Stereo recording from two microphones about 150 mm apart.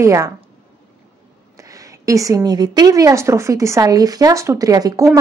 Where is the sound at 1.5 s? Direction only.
20° right (ahead or behind).